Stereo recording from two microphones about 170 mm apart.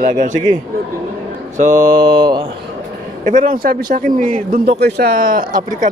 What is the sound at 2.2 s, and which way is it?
Speech, 25° right (ahead or behind).